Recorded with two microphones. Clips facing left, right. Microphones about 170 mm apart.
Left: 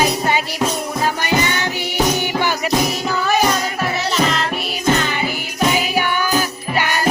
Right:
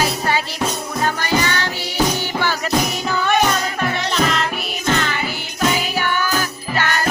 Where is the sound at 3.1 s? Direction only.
Centre (ahead or behind).